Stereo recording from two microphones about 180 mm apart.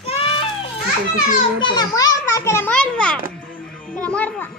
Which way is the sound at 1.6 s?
20° left (ahead or behind).